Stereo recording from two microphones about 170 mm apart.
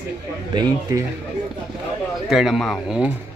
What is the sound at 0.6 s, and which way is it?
Speech, 20° right (ahead or behind).